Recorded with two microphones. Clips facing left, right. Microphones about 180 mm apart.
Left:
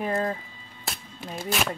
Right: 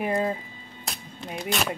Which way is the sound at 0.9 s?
Centre (ahead or behind).